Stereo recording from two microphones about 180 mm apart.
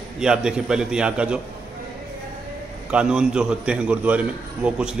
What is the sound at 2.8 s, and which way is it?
A man's voice, 5° right (ahead or behind).